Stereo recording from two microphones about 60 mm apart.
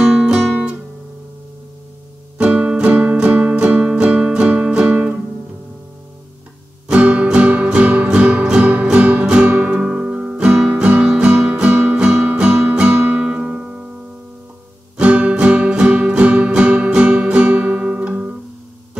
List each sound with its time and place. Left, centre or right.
0.0 s guitar: centre
2.3 s music: right
6.9 s guitar: right
7.2 s music: centre
15.0 s music: right